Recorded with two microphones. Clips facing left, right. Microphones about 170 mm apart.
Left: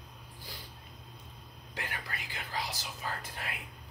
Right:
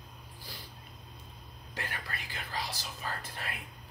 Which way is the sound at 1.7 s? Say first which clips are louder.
Even; 15° left (ahead or behind).